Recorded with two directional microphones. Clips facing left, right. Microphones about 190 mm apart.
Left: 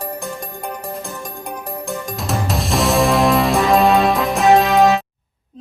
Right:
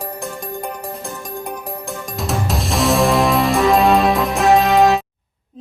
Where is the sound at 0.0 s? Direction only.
Centre (ahead or behind).